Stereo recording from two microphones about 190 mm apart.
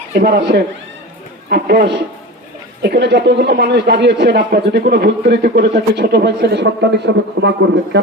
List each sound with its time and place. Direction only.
0.1 s speech: 60° right (ahead or behind)